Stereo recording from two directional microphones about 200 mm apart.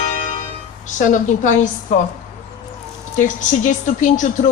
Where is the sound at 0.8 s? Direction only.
40° left (ahead or behind).